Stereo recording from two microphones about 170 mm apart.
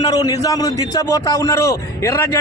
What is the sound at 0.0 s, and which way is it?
A man's voice, 20° left (ahead or behind).